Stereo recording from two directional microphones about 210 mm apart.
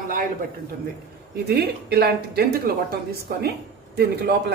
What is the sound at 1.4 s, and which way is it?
Speech, 50° right (ahead or behind).